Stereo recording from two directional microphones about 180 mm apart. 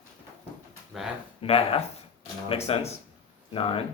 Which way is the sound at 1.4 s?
35° left (ahead or behind).